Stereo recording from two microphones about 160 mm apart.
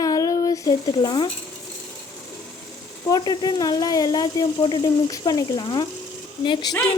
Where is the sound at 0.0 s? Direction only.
20° left (ahead or behind).